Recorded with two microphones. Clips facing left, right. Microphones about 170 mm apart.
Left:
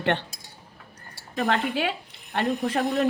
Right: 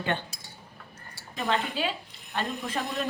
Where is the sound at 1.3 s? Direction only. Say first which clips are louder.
Left 4 dB; 65° left (ahead or behind).